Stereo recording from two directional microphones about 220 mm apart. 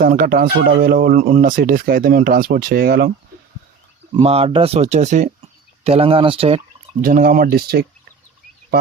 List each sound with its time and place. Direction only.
0.0 s speech: 40° right (ahead or behind)
4.1 s speech: 25° right (ahead or behind)
7.0 s speech: 40° right (ahead or behind)